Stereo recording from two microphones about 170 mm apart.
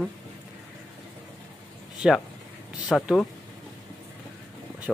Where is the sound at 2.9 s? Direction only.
Centre (ahead or behind).